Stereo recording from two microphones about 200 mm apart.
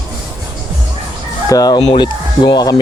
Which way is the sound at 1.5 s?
20° left (ahead or behind).